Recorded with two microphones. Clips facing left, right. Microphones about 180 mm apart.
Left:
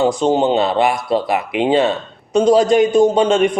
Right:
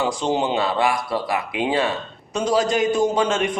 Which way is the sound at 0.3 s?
25° left (ahead or behind).